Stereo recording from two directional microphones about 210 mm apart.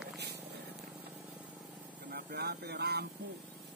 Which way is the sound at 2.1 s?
45° right (ahead or behind).